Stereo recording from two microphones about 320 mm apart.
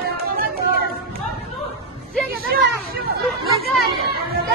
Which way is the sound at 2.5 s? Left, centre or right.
Right.